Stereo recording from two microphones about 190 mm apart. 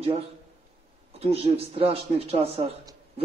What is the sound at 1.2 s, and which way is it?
Speech, 30° right (ahead or behind).